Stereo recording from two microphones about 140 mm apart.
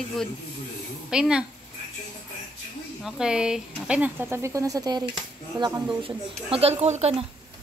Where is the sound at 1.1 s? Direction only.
5° right (ahead or behind).